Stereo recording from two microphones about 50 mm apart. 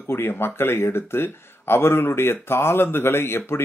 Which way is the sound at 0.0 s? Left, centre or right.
Left.